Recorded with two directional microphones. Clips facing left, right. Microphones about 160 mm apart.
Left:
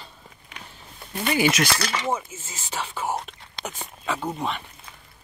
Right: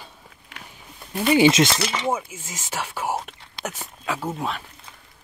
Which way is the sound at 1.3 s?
25° right (ahead or behind).